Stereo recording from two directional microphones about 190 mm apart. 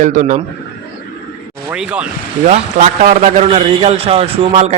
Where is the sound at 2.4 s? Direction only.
35° right (ahead or behind).